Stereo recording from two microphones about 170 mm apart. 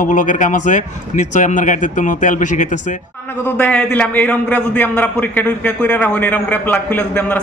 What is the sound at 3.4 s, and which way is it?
A man's voice, 5° left (ahead or behind).